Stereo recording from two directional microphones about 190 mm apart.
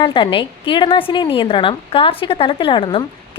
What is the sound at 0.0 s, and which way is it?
A woman's voice, 25° left (ahead or behind).